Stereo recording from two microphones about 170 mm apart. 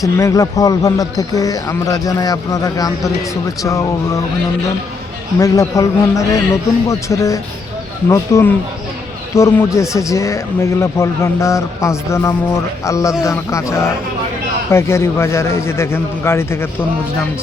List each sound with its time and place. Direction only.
0.0 s speech: 20° left (ahead or behind)
5.4 s a man's voice: 20° left (ahead or behind)